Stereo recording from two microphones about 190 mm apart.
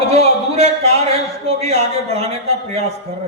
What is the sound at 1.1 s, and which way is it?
A man's voice, 30° right (ahead or behind).